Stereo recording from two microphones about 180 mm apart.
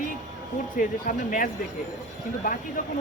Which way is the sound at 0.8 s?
50° left (ahead or behind).